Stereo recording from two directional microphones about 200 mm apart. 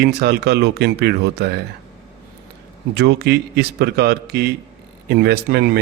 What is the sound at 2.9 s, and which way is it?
Speech, 55° right (ahead or behind).